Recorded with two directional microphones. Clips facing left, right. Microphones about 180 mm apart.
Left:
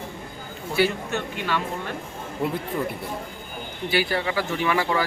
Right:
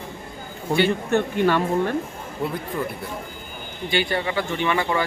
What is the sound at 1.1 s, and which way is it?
Speech, 50° right (ahead or behind).